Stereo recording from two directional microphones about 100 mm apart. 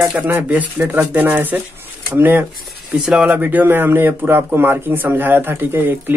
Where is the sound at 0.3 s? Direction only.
15° right (ahead or behind).